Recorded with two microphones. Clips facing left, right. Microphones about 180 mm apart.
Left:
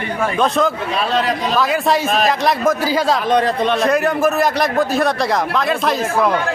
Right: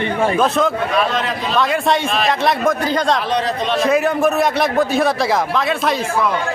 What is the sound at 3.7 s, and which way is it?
A man's voice, centre (ahead or behind).